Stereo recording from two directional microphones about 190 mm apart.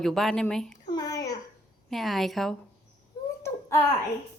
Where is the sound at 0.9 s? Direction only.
20° left (ahead or behind).